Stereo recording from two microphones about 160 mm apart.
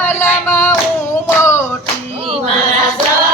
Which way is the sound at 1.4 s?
15° left (ahead or behind).